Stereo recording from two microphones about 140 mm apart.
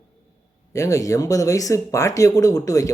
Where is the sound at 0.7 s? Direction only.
25° left (ahead or behind).